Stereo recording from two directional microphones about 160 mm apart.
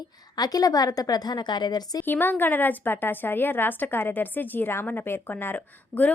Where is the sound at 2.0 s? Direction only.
10° left (ahead or behind).